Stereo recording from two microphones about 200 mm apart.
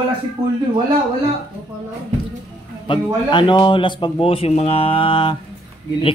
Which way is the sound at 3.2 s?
20° left (ahead or behind).